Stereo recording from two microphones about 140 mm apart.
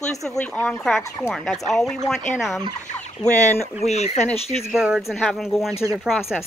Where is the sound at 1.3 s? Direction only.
Centre (ahead or behind).